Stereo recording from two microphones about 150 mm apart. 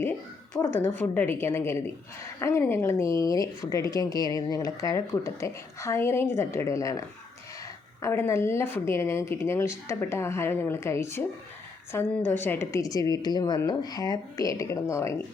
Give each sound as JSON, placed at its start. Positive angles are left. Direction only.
{"t": 0.6, "sound": "a woman's voice", "side_deg": 15}
{"t": 8.0, "sound": "a woman's voice", "side_deg": 20}